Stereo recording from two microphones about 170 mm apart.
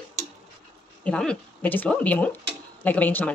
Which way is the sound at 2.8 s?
10° left (ahead or behind).